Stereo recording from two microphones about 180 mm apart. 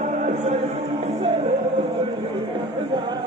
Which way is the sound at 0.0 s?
40° right (ahead or behind).